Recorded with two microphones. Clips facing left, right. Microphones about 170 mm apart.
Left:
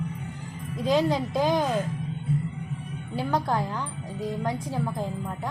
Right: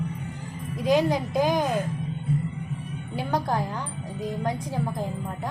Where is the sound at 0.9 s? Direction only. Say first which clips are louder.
Right 1 dB; 15° right (ahead or behind).